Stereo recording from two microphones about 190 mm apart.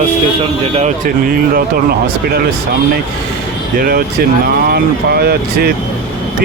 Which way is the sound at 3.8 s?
50° right (ahead or behind).